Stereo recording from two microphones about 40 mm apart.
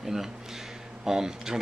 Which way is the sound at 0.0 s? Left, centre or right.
Centre.